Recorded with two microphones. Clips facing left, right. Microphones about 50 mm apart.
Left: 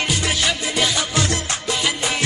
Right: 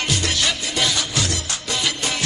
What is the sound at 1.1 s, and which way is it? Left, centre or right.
Music, left.